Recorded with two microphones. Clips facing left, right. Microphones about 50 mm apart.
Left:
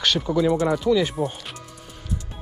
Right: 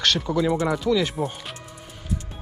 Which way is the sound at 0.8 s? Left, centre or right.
Centre.